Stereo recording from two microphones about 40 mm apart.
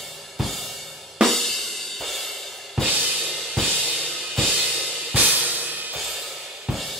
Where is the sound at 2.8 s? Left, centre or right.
Right.